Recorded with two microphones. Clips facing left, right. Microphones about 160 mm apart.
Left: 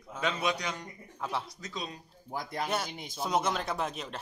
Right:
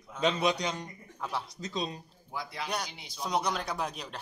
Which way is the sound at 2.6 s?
5° left (ahead or behind).